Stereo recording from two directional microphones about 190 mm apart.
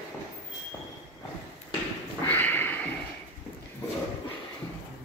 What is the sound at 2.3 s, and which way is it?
Sniff, 10° left (ahead or behind).